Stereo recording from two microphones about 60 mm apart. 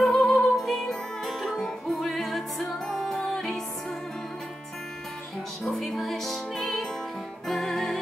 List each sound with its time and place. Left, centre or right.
0.0 s music: centre
5.7 s music: centre